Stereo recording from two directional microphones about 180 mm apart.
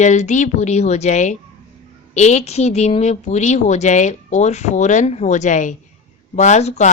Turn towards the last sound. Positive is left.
turn(degrees=40)  # may be behind; listen again after turning